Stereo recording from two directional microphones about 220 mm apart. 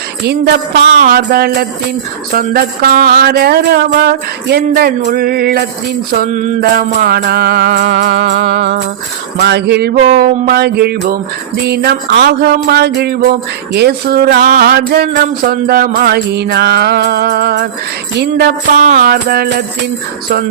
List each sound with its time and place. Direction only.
0.9 s music: 40° right (ahead or behind)